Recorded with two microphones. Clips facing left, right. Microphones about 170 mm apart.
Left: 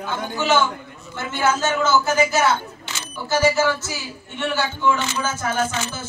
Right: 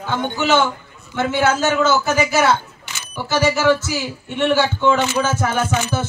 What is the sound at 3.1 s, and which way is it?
Speech, 75° right (ahead or behind).